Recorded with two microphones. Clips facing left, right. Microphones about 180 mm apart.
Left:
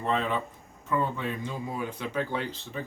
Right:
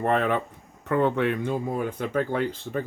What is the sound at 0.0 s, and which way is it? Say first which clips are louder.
Speech: right 5 dB; 60° right (ahead or behind).